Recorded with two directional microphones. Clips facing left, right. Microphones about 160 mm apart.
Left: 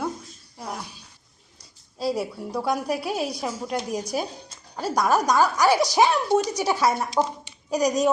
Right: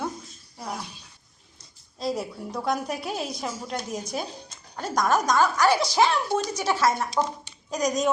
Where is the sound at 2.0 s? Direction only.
5° left (ahead or behind).